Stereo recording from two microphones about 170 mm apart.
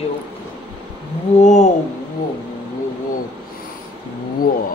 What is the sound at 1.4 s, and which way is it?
Speech, 45° left (ahead or behind).